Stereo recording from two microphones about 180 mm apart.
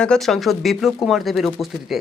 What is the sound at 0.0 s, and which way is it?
Speech, 5° left (ahead or behind).